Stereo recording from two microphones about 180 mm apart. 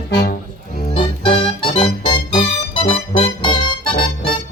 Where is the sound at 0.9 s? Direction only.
30° left (ahead or behind).